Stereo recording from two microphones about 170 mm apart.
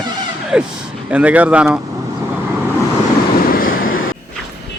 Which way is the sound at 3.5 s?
55° left (ahead or behind).